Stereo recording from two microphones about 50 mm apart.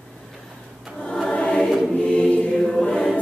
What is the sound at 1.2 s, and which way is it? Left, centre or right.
Choir, left.